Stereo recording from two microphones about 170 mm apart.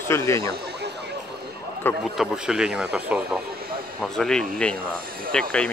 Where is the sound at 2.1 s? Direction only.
5° right (ahead or behind).